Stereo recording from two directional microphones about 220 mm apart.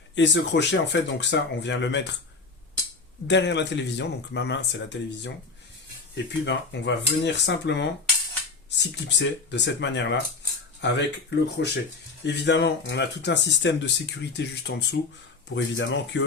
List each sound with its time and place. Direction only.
0.2 s speech: 55° left (ahead or behind)
3.2 s speech: 50° left (ahead or behind)
6.4 s speech: 50° left (ahead or behind)